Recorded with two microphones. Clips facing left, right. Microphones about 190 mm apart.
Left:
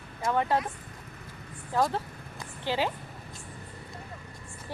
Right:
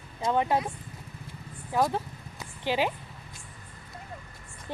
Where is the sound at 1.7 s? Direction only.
10° right (ahead or behind).